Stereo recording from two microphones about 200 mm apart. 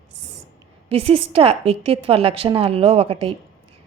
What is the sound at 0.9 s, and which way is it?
A woman's voice, 30° right (ahead or behind).